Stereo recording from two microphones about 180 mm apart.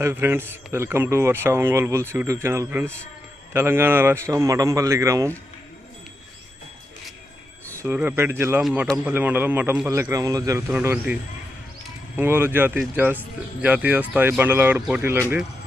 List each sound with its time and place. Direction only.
0.0 s a man's voice: 15° right (ahead or behind)
7.8 s a man's voice: 10° right (ahead or behind)
8.6 s speech: centre (ahead or behind)
8.9 s a man's voice: 10° right (ahead or behind)
12.2 s a man's voice: 10° right (ahead or behind)